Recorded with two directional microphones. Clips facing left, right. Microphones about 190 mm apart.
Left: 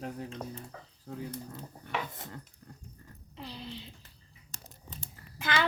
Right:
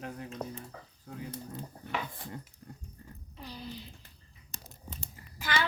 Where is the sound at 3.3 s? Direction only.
25° left (ahead or behind).